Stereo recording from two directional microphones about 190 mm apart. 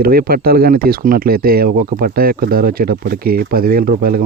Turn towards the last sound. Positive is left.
turn(degrees=-50)  # may be behind; listen again after turning